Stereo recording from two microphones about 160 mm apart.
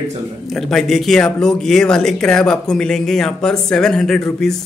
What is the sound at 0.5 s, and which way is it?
Speech, centre (ahead or behind).